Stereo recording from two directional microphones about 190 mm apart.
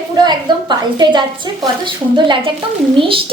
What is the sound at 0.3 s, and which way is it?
A woman's voice, 25° right (ahead or behind).